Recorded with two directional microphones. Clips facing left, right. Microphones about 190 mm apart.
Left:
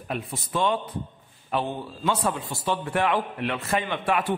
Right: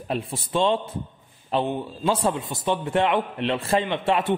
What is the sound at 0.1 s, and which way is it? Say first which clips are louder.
A man's voice: right 4 dB; 30° right (ahead or behind).